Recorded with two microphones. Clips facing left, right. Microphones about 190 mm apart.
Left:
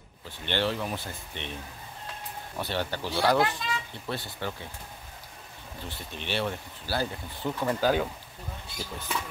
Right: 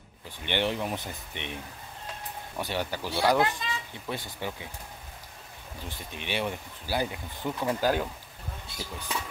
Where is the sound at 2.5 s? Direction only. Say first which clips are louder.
Even; 10° right (ahead or behind).